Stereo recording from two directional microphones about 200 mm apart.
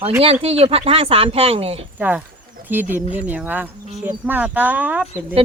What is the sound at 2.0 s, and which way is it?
Speech, 10° right (ahead or behind).